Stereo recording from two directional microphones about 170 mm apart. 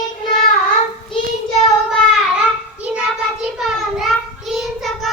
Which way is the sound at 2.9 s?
5° right (ahead or behind).